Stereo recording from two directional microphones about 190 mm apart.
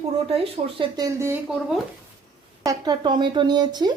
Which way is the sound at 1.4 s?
5° right (ahead or behind).